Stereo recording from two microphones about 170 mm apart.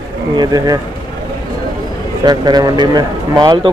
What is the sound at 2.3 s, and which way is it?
Speech, 25° right (ahead or behind).